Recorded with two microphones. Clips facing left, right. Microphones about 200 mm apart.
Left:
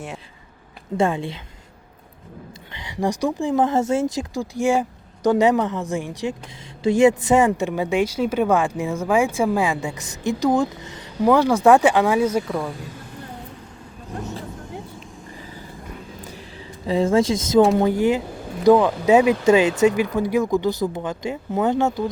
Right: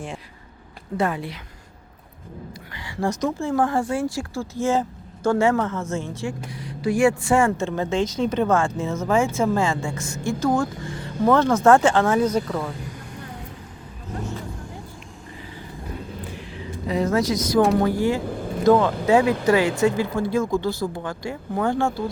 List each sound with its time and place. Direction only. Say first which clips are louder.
0.9 s speech: left 3 dB; 25° left (ahead or behind)
2.7 s speech: left 2 dB; 20° left (ahead or behind)
16.8 s speech: left 3 dB; 30° left (ahead or behind)